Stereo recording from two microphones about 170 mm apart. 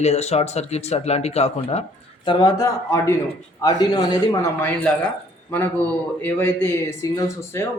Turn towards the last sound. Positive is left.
turn(degrees=15)  # may be behind; listen again after turning